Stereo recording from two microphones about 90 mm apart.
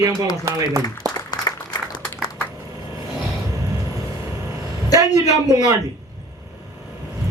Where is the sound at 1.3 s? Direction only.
45° left (ahead or behind).